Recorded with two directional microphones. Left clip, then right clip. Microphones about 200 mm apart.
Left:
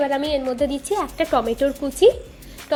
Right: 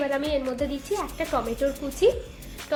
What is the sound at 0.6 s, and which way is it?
Speech, 25° left (ahead or behind).